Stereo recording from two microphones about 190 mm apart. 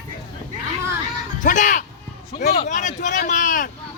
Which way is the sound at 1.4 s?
40° left (ahead or behind).